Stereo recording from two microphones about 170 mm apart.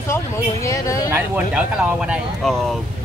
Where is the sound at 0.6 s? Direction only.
20° left (ahead or behind).